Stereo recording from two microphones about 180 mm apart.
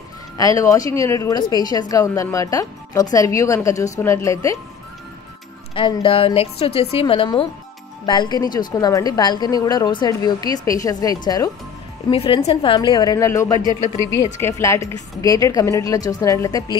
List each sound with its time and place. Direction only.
0.4 s a woman's voice: 20° left (ahead or behind)
5.8 s a woman's voice: 30° left (ahead or behind)